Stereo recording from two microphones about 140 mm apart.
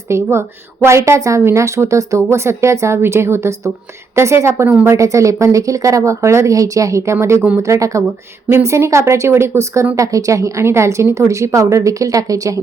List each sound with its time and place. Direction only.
0.1 s a woman's voice: 20° right (ahead or behind)